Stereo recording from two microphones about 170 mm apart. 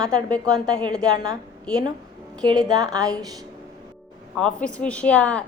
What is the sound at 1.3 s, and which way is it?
Speech, 5° left (ahead or behind).